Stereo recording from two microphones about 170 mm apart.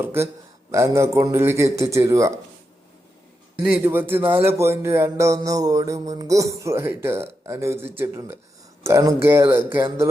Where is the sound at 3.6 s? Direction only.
10° right (ahead or behind).